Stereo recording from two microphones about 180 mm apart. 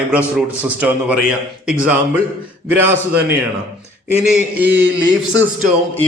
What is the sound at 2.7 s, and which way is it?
Speech, 10° right (ahead or behind).